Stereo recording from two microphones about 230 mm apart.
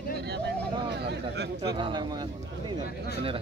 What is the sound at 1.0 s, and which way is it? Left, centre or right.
Speech, right.